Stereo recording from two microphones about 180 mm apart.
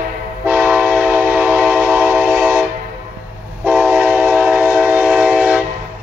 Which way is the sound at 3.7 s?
5° right (ahead or behind).